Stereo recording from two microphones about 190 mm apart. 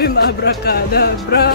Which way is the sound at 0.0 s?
55° left (ahead or behind).